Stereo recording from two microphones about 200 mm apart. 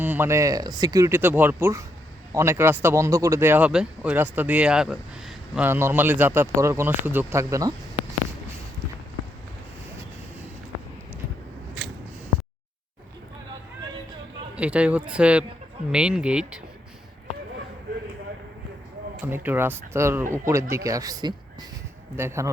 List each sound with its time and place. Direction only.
0.0 s speech: 10° right (ahead or behind)
14.5 s speech: 5° right (ahead or behind)
19.2 s speech: 10° right (ahead or behind)